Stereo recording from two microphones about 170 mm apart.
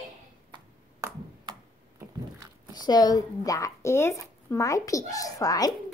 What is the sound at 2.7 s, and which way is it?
Speech, 25° left (ahead or behind).